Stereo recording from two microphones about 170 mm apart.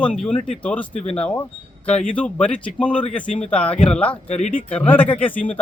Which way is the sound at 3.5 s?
5° left (ahead or behind).